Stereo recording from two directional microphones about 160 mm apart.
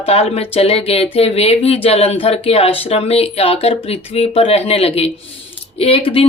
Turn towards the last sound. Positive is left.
turn(degrees=35)  # may be behind; listen again after turning